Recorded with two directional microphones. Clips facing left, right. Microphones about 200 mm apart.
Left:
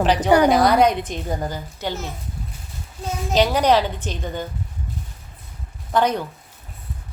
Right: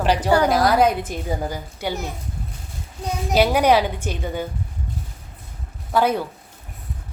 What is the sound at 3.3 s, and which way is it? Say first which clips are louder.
A woman's voice: right 1 dB; 10° right (ahead or behind).